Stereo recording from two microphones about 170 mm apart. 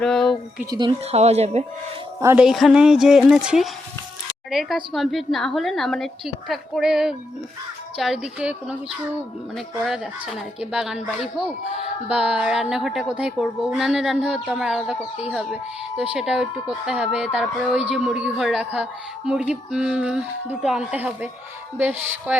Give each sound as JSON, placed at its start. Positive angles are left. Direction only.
{"t": 0.0, "sound": "speech", "side_deg": 5}
{"t": 0.7, "sound": "speech", "side_deg": -25}
{"t": 1.0, "sound": "speech", "side_deg": -40}
{"t": 2.2, "sound": "a woman's voice", "side_deg": -5}